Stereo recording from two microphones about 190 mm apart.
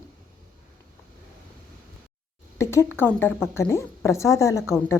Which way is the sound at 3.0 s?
10° left (ahead or behind).